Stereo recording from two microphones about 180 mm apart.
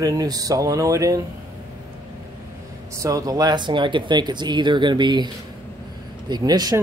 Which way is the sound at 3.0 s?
20° right (ahead or behind).